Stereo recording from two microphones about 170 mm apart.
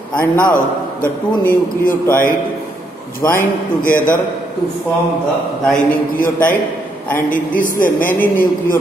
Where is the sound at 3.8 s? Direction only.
55° left (ahead or behind).